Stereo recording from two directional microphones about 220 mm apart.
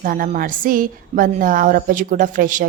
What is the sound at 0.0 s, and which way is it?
A woman's voice, 40° right (ahead or behind).